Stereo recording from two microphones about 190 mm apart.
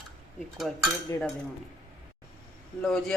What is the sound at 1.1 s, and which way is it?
Speech, 15° left (ahead or behind).